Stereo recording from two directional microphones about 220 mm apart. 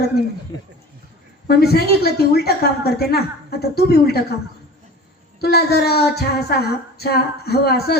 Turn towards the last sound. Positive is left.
turn(degrees=45)  # may be behind; listen again after turning